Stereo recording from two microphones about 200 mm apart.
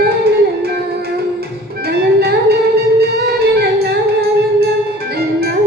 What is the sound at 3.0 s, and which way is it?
Music, 55° right (ahead or behind).